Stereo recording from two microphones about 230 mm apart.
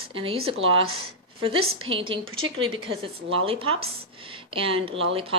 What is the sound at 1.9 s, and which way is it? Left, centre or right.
Speech, right.